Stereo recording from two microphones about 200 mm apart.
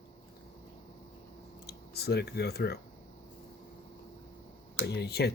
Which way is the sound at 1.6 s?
55° left (ahead or behind).